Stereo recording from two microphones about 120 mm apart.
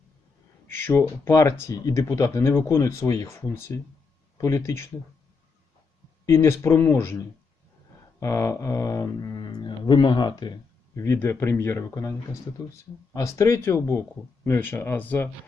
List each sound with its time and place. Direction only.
0.7 s speech: 20° left (ahead or behind)
6.2 s speech: 25° left (ahead or behind)